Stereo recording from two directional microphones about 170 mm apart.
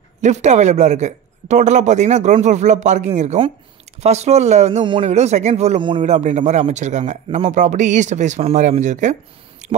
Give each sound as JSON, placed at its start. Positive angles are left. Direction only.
{"t": 0.2, "sound": "speech", "side_deg": -45}